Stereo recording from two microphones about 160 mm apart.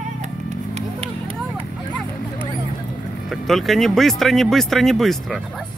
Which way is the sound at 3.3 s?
Centre (ahead or behind).